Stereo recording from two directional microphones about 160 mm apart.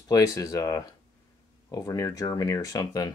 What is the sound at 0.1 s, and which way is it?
Speech, 20° left (ahead or behind).